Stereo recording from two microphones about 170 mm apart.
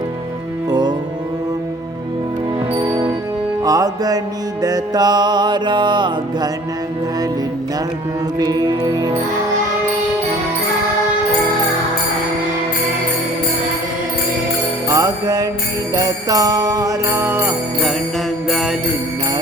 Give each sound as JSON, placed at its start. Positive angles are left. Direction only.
{"t": 0.7, "sound": "music", "side_deg": -25}
{"t": 2.7, "sound": "music", "side_deg": -30}
{"t": 8.4, "sound": "music", "side_deg": -20}
{"t": 14.8, "sound": "mantra", "side_deg": -20}
{"t": 16.0, "sound": "jingle bell", "side_deg": -20}
{"t": 18.4, "sound": "jingle bell", "side_deg": 0}